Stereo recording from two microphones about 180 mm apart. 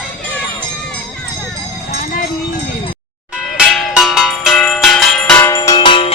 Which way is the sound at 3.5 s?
5° right (ahead or behind).